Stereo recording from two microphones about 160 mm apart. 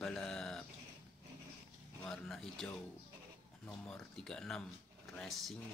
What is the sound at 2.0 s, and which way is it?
Speech, 5° left (ahead or behind).